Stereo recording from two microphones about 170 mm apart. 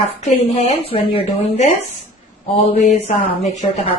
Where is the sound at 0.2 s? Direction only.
40° left (ahead or behind).